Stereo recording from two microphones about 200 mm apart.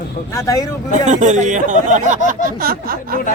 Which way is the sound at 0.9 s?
35° right (ahead or behind).